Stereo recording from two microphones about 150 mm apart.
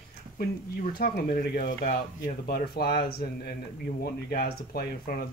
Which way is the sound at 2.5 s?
90° left.